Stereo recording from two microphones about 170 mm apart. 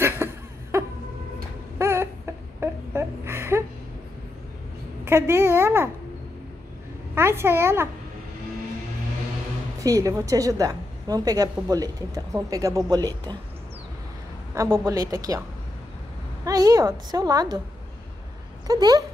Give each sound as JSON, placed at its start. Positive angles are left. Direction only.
{"t": 0.0, "sound": "a sound", "side_deg": -15}
{"t": 5.0, "sound": "speech", "side_deg": -15}
{"t": 7.2, "sound": "speech", "side_deg": -15}
{"t": 9.8, "sound": "a woman's voice", "side_deg": -20}
{"t": 14.5, "sound": "a woman's voice", "side_deg": -20}
{"t": 16.4, "sound": "a woman's voice", "side_deg": -20}
{"t": 18.7, "sound": "a woman's voice", "side_deg": -20}